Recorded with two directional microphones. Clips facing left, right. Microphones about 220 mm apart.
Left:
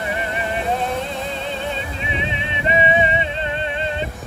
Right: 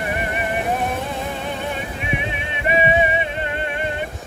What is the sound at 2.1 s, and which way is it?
Music, 20° left (ahead or behind).